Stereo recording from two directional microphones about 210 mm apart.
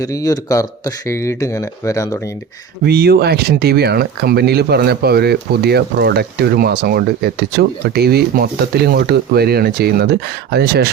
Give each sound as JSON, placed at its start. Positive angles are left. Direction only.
{"t": 0.0, "sound": "speech", "side_deg": 15}
{"t": 2.8, "sound": "speech", "side_deg": -50}